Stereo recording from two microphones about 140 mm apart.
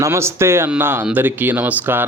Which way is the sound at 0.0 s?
20° right (ahead or behind).